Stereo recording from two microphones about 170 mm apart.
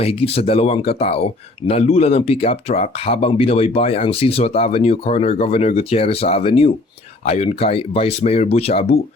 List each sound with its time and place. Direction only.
0.0 s speech: 35° left (ahead or behind)